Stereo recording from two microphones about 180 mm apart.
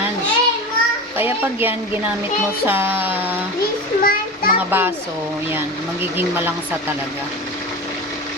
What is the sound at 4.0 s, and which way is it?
Children playing, 50° left (ahead or behind).